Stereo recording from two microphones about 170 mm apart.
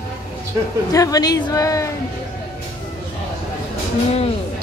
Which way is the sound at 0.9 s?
20° left (ahead or behind).